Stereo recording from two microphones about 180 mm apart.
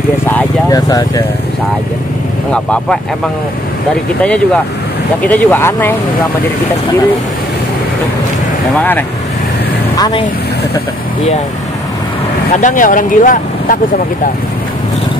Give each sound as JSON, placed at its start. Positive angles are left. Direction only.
{"t": 0.3, "sound": "speech", "side_deg": 20}
{"t": 2.5, "sound": "speech", "side_deg": 5}
{"t": 5.2, "sound": "speech", "side_deg": 10}
{"t": 8.7, "sound": "speech", "side_deg": 10}
{"t": 9.9, "sound": "speech", "side_deg": 20}
{"t": 12.5, "sound": "speech", "side_deg": 45}